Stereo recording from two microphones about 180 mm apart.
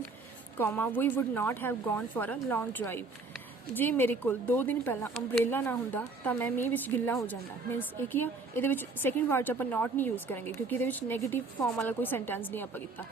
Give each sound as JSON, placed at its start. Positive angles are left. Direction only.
{"t": 0.5, "sound": "a woman's voice", "side_deg": 10}